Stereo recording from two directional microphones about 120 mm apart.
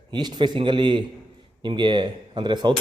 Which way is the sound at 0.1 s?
35° right (ahead or behind).